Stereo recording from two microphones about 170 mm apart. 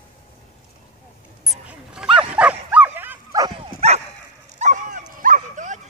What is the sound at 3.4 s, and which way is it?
Dog, 25° right (ahead or behind).